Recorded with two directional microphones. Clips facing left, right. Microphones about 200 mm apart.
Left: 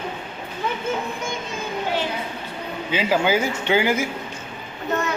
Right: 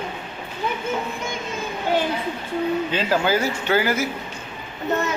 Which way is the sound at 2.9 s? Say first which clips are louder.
Left 1 dB; 10° left (ahead or behind).